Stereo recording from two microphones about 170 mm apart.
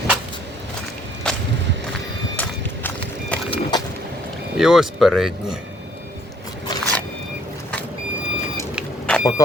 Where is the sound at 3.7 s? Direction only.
25° left (ahead or behind).